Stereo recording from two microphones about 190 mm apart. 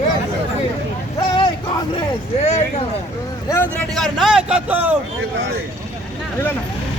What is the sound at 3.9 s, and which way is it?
A man's voice, centre (ahead or behind).